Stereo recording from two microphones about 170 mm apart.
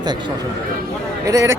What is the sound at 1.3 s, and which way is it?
Speech, 20° right (ahead or behind).